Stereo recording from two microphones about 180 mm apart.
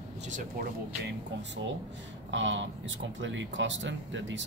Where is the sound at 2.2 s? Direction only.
90° right.